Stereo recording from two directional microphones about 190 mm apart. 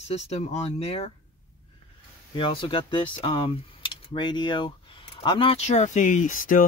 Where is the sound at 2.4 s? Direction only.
25° left (ahead or behind).